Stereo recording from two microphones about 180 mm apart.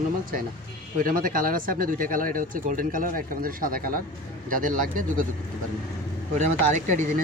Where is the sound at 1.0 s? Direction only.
50° right (ahead or behind).